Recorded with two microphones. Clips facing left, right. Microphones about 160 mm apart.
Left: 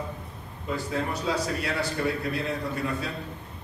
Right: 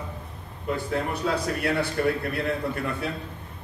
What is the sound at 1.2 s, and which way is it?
A man's voice, 55° right (ahead or behind).